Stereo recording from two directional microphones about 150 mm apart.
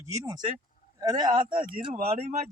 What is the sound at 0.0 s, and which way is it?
Speech, 25° right (ahead or behind).